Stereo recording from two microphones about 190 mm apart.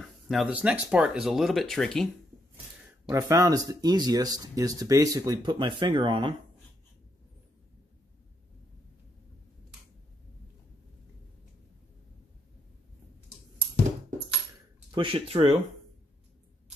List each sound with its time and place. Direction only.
0.3 s speech: 5° right (ahead or behind)
3.1 s speech: 15° right (ahead or behind)
14.9 s speech: 25° right (ahead or behind)